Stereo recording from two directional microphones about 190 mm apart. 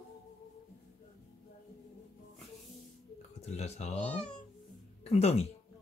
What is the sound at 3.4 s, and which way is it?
Speech, 35° left (ahead or behind).